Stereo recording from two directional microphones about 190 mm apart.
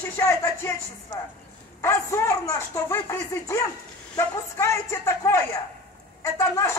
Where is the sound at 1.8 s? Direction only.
15° left (ahead or behind).